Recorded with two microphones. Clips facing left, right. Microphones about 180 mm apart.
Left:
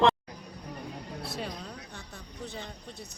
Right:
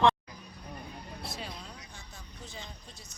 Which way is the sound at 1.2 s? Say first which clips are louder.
Left 5 dB; 60° left (ahead or behind).